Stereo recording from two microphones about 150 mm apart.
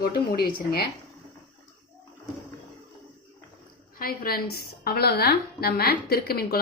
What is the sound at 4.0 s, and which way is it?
A woman's voice, 85° left.